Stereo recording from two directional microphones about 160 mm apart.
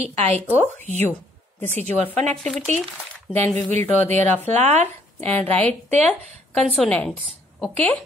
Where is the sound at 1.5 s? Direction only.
10° left (ahead or behind).